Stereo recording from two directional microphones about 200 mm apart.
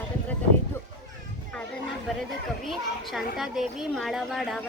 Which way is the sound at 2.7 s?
Centre (ahead or behind).